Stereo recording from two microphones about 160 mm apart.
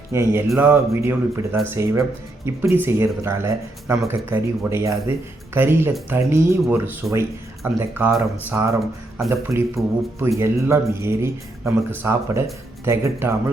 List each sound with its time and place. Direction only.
0.1 s speech: 15° right (ahead or behind)